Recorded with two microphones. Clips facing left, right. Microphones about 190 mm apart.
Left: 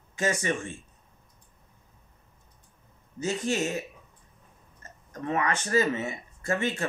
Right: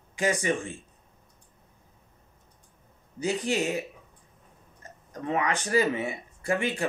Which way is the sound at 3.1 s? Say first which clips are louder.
Right 1 dB; 15° right (ahead or behind).